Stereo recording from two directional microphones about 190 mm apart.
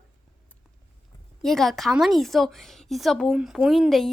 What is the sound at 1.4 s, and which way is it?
A woman's voice, centre (ahead or behind).